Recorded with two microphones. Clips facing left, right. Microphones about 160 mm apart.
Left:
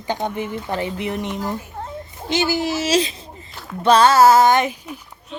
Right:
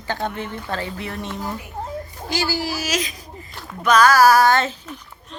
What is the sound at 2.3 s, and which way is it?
Speech, 20° left (ahead or behind).